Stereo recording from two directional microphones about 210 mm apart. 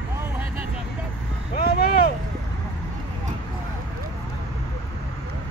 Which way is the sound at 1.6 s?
45° left (ahead or behind).